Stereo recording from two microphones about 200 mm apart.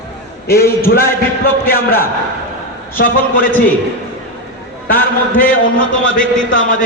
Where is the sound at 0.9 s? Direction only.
50° left (ahead or behind).